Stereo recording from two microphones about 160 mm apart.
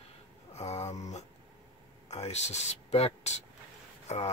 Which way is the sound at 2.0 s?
45° left (ahead or behind).